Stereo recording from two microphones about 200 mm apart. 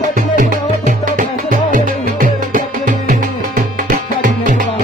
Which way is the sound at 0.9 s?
40° right (ahead or behind).